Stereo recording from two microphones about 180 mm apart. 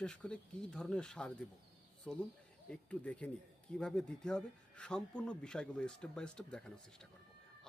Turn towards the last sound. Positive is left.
turn(degrees=5)  # may be behind; listen again after turning